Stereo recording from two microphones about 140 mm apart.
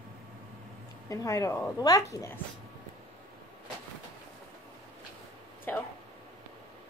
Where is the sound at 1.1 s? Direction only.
25° left (ahead or behind).